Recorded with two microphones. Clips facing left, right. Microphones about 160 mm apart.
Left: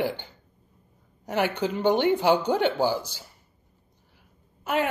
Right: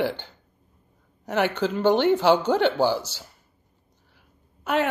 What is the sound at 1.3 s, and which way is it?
A woman's voice, 10° left (ahead or behind).